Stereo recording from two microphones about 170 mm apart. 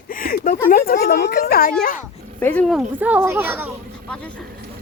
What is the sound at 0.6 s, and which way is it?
Speech, 55° left (ahead or behind).